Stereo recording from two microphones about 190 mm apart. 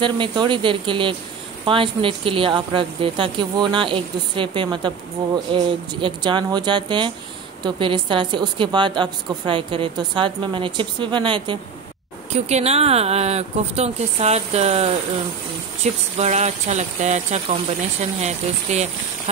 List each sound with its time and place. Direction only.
0.0 s a woman's voice: 25° right (ahead or behind)